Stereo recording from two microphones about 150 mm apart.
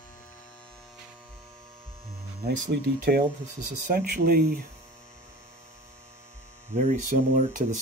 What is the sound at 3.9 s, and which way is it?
Speech, 90° right.